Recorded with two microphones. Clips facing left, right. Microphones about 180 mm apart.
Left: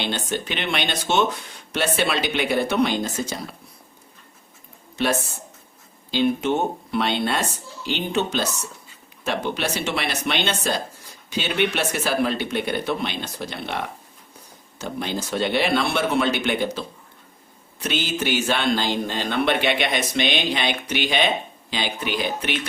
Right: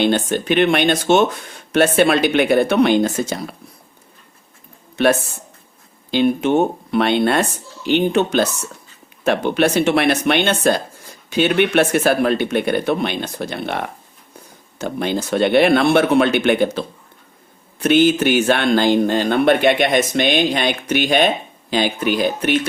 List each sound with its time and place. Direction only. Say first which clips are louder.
0.0 s speech: right 9 dB; 50° right (ahead or behind)
6.1 s speech: right 5 dB; 60° right (ahead or behind)